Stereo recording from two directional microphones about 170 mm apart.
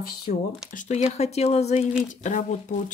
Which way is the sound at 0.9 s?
40° left (ahead or behind).